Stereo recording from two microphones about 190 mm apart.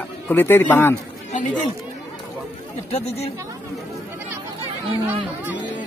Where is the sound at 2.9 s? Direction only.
35° left (ahead or behind).